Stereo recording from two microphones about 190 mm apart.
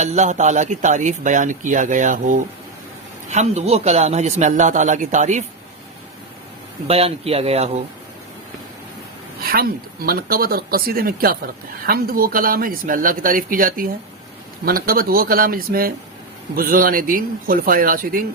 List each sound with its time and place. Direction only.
0.0 s a man's voice: 40° right (ahead or behind)
6.8 s a man's voice: 30° right (ahead or behind)
9.5 s speech: 50° right (ahead or behind)